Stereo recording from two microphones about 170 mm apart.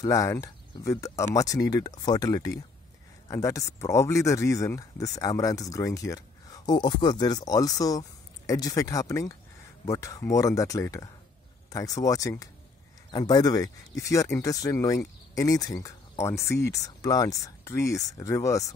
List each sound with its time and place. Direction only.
0.0 s speech: 20° left (ahead or behind)
16.3 s speech: 70° left (ahead or behind)
16.6 s speech: 20° left (ahead or behind)